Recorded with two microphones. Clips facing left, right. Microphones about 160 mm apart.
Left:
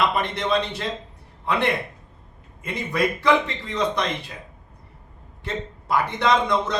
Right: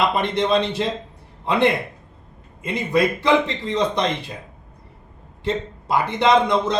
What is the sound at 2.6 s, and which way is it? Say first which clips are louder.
A man's voice: right 4 dB; 25° right (ahead or behind).